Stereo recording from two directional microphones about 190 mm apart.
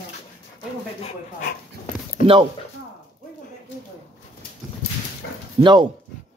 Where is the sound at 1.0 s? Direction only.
45° left (ahead or behind).